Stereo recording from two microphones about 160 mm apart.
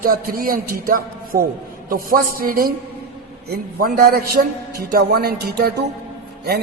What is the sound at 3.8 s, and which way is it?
A man's voice, 65° right (ahead or behind).